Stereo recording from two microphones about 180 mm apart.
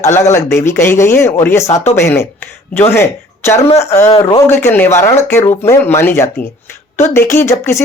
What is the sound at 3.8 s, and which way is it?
Speech, 15° left (ahead or behind).